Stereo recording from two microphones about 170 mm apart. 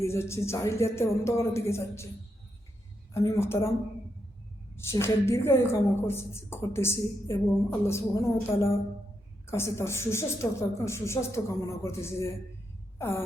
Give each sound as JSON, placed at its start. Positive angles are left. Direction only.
{"t": 0.0, "sound": "a woman's voice", "side_deg": 15}
{"t": 3.1, "sound": "a woman's voice", "side_deg": 15}
{"t": 4.9, "sound": "a woman's voice", "side_deg": 15}
{"t": 13.0, "sound": "a sound", "side_deg": 15}